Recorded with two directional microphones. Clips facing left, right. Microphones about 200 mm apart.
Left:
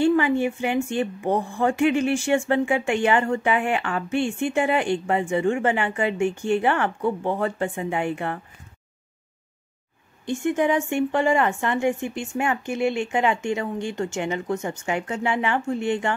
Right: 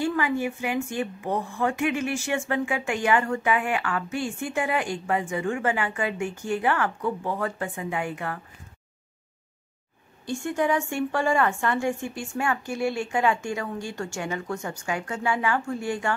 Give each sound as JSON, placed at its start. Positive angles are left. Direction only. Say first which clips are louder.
{"t": 0.0, "sound": "a woman's voice", "louder": "left 6 dB", "side_deg": 25}
{"t": 10.2, "sound": "a woman's voice", "louder": "left 4 dB", "side_deg": 20}